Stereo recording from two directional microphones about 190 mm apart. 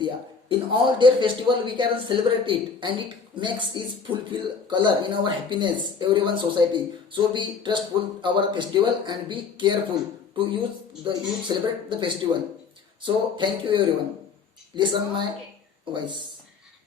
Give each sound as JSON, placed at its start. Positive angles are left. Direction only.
{"t": 0.0, "sound": "a man's voice", "side_deg": -25}
{"t": 11.0, "sound": "a man's voice", "side_deg": -25}